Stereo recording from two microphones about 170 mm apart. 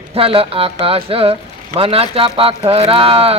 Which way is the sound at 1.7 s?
35° right (ahead or behind).